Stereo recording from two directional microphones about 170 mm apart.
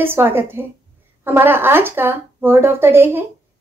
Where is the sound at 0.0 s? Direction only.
15° right (ahead or behind).